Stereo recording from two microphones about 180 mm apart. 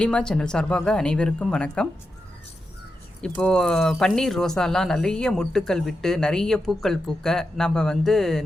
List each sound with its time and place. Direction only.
0.0 s speech: 5° left (ahead or behind)
3.2 s speech: 5° left (ahead or behind)